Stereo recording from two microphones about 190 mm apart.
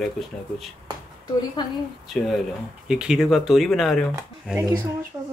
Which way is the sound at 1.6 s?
25° left (ahead or behind).